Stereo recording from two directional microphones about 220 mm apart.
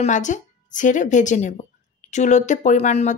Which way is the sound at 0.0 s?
35° left (ahead or behind).